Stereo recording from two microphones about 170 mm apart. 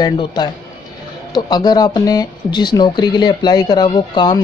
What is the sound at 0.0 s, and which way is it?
Speech, 25° left (ahead or behind).